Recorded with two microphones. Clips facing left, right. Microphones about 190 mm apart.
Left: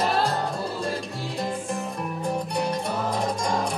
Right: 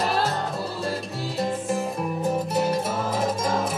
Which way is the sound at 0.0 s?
Centre (ahead or behind).